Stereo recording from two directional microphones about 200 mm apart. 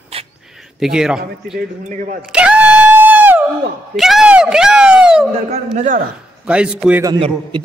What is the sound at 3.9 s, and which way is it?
Speech, centre (ahead or behind).